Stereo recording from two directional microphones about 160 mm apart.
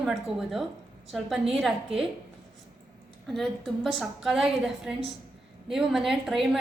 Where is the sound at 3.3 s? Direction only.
Centre (ahead or behind).